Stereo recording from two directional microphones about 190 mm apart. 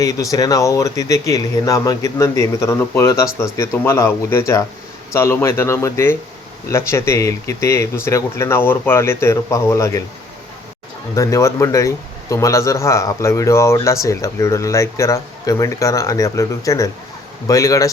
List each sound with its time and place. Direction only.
0.0 s speech: 20° left (ahead or behind)
11.1 s speech: 15° left (ahead or behind)